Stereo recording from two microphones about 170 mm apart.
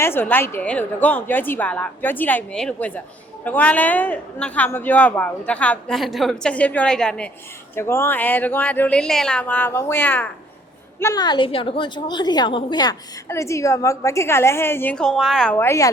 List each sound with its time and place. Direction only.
0.0 s a woman's voice: 15° left (ahead or behind)
7.8 s a woman's voice: 15° left (ahead or behind)
11.0 s a woman's voice: 20° left (ahead or behind); by 15.5 s centre (ahead or behind)
15.5 s a woman's voice: 15° left (ahead or behind)